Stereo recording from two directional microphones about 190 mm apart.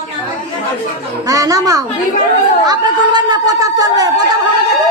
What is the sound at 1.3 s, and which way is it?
Speech, 20° right (ahead or behind).